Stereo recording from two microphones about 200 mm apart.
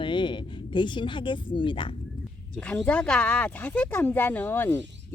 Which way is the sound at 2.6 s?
5° left (ahead or behind).